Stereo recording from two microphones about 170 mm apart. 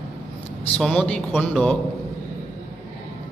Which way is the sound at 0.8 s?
5° left (ahead or behind).